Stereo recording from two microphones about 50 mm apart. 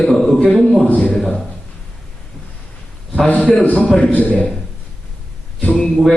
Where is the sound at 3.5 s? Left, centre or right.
Left.